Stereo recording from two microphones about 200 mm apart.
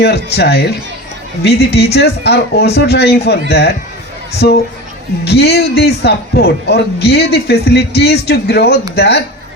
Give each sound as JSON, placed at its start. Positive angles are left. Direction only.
{"t": 0.0, "sound": "a man's voice", "side_deg": 55}